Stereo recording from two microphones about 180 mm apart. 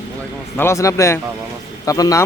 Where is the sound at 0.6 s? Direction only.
15° left (ahead or behind).